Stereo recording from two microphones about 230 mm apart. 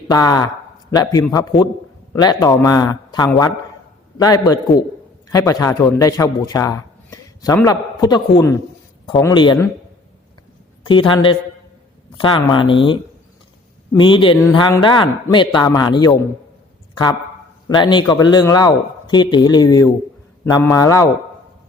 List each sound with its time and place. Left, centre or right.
0.1 s a man's voice: centre
10.8 s speech: left
17.7 s a man's voice: centre